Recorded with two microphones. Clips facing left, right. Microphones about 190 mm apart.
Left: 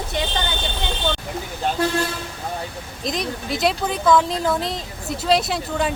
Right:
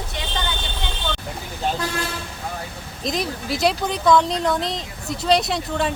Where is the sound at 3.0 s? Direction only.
Centre (ahead or behind).